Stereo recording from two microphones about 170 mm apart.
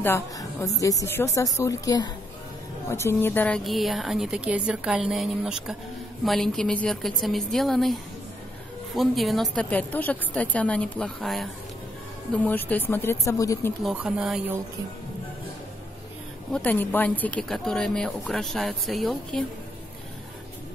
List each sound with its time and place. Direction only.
0.0 s a woman's voice: 15° left (ahead or behind)
13.8 s a woman's voice: 5° right (ahead or behind)
16.5 s a woman's voice: 10° left (ahead or behind)